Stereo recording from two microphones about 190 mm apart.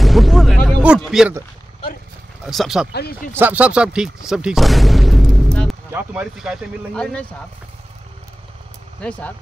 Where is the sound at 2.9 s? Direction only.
55° left (ahead or behind).